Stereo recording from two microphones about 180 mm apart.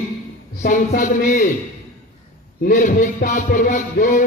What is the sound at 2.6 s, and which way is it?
Speech, 45° left (ahead or behind).